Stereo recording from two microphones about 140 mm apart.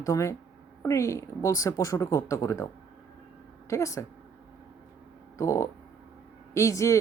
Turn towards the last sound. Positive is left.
turn(degrees=20)  # may be behind; listen again after turning